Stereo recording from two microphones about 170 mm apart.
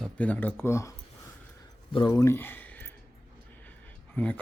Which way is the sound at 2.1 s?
15° left (ahead or behind).